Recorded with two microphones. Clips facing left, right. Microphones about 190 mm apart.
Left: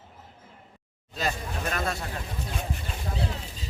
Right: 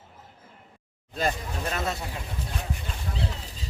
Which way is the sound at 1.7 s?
25° right (ahead or behind).